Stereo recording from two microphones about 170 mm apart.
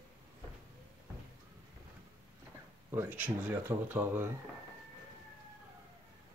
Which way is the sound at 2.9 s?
10° right (ahead or behind).